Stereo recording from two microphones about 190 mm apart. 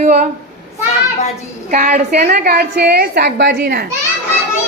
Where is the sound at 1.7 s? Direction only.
45° right (ahead or behind).